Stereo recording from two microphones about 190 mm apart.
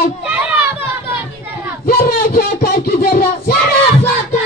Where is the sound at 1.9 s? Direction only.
50° left (ahead or behind).